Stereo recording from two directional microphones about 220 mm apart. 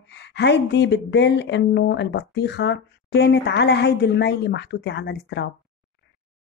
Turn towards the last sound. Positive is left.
turn(degrees=50)  # may be behind; listen again after turning